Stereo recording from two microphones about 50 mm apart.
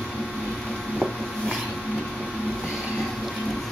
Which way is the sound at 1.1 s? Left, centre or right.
Centre.